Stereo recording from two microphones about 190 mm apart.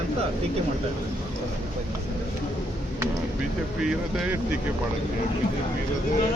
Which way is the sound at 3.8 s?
Centre (ahead or behind).